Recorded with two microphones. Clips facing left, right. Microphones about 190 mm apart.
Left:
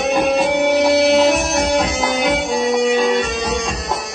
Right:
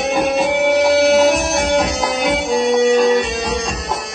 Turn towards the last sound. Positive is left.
turn(degrees=0)  # may be behind; listen again after turning